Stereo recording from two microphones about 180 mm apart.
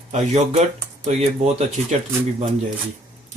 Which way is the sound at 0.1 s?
40° right (ahead or behind).